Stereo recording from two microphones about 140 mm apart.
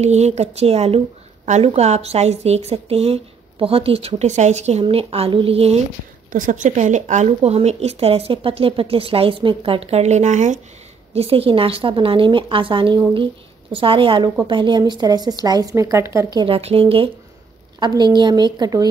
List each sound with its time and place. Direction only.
0.0 s speech: 50° right (ahead or behind)
6.3 s speech: 70° right (ahead or behind)
11.1 s a woman's voice: 45° right (ahead or behind); by 16.3 s 20° right (ahead or behind)
16.3 s a woman's voice: 40° right (ahead or behind)